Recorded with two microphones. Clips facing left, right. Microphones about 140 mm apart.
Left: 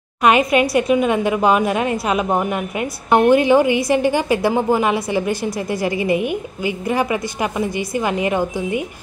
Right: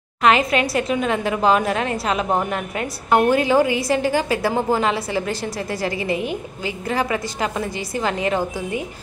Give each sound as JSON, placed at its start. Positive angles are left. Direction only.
{"t": 0.5, "sound": "a woman's voice", "side_deg": 15}